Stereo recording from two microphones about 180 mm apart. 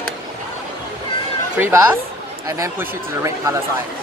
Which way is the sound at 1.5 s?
15° right (ahead or behind).